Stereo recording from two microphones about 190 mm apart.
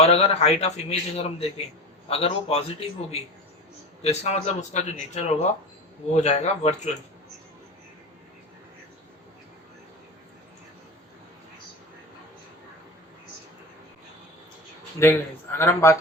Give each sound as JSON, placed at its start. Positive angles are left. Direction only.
{"t": 0.0, "sound": "a man's voice", "side_deg": 30}
{"t": 15.0, "sound": "speech", "side_deg": 15}